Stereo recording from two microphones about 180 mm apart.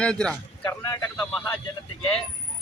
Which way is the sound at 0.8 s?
20° left (ahead or behind).